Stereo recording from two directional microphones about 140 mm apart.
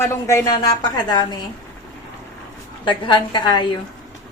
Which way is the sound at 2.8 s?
35° left (ahead or behind).